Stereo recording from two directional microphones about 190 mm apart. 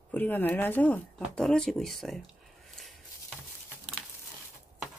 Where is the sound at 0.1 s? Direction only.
10° left (ahead or behind).